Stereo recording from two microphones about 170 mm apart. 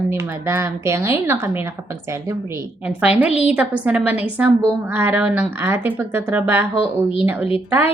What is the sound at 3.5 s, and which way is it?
A woman's voice, 10° right (ahead or behind).